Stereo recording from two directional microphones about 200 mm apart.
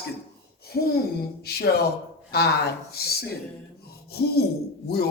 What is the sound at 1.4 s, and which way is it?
Speech, 50° left (ahead or behind).